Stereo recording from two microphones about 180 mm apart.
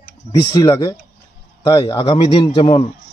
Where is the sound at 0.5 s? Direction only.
25° left (ahead or behind).